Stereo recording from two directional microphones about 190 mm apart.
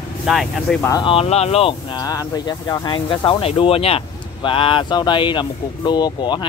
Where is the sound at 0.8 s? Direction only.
20° left (ahead or behind).